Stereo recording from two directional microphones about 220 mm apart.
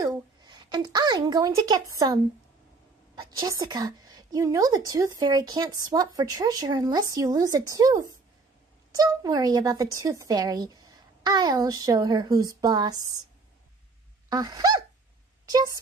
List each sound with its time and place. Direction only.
0.0 s a woman's voice: 20° right (ahead or behind)
3.2 s a woman's voice: 15° right (ahead or behind)
14.3 s dog: 20° right (ahead or behind)
15.4 s speech: 15° right (ahead or behind)